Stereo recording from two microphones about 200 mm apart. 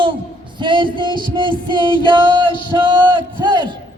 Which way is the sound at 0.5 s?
25° right (ahead or behind).